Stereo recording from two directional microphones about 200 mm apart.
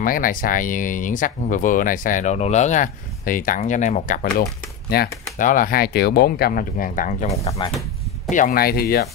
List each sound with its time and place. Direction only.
0.0 s speech: 45° left (ahead or behind)
4.4 s speech: 55° left (ahead or behind)
7.2 s speech: 15° left (ahead or behind)
8.3 s speech: 45° left (ahead or behind)